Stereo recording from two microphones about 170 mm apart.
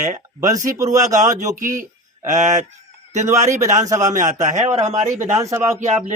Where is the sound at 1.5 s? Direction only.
50° right (ahead or behind).